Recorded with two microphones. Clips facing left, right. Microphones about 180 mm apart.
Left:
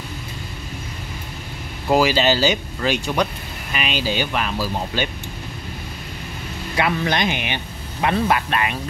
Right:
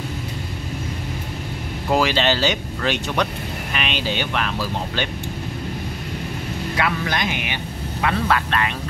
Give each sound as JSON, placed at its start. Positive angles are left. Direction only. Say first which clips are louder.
{"t": 1.9, "sound": "speech", "louder": "left 2 dB", "side_deg": 5}
{"t": 6.8, "sound": "speech", "louder": "left 4 dB", "side_deg": 25}